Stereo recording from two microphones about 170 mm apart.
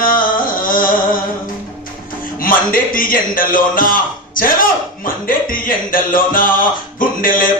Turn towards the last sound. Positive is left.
turn(degrees=55)  # may be behind; listen again after turning